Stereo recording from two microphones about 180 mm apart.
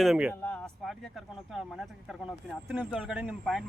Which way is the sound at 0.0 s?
5° right (ahead or behind).